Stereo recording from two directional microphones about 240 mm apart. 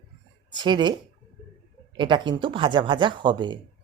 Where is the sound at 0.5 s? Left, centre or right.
Centre.